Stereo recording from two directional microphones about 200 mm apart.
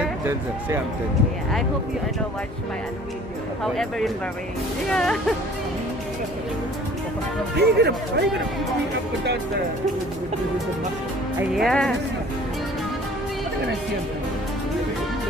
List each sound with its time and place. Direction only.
0.0 s speech: 10° right (ahead or behind)
3.6 s speech: centre (ahead or behind)
7.5 s speech: 55° right (ahead or behind)
11.3 s speech: centre (ahead or behind)